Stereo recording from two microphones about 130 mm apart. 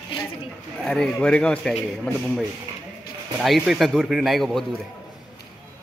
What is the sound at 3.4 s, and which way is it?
Speech, centre (ahead or behind).